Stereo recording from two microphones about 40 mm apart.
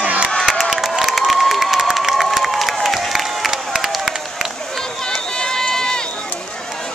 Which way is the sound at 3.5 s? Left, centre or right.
Centre.